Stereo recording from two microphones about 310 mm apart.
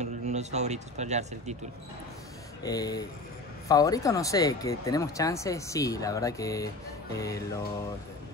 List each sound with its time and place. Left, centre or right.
0.0 s speech: right
2.6 s speech: centre